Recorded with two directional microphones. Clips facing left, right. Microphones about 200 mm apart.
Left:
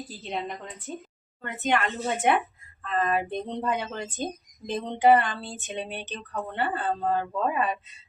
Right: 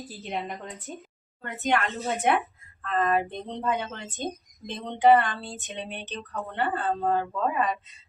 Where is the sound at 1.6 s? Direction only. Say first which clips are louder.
Even; centre (ahead or behind).